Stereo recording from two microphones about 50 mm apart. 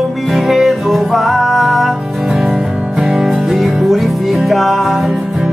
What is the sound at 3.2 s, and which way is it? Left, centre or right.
Music, centre.